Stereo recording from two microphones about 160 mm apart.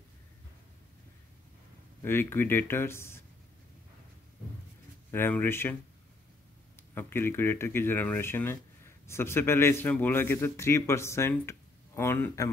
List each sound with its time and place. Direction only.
2.0 s speech: 15° left (ahead or behind)
5.1 s speech: 15° left (ahead or behind)
7.0 s speech: 15° left (ahead or behind)